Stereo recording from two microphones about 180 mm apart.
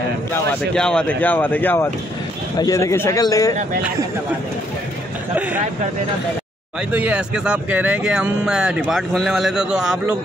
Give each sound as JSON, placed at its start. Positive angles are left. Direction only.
{"t": 0.3, "sound": "speech", "side_deg": 10}
{"t": 6.9, "sound": "speech", "side_deg": -10}